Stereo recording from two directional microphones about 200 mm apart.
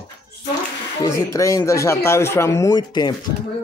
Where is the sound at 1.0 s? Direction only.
15° left (ahead or behind).